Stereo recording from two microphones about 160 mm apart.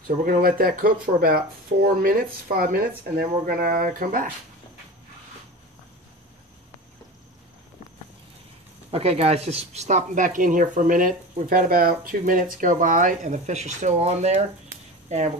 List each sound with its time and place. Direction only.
0.1 s speech: 60° right (ahead or behind)
8.9 s speech: 40° right (ahead or behind)